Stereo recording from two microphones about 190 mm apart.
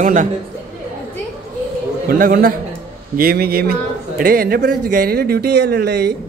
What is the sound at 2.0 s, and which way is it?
A man's voice, 50° right (ahead or behind).